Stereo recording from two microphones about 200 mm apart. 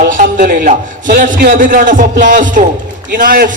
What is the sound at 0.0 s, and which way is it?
A man's voice, 40° right (ahead or behind).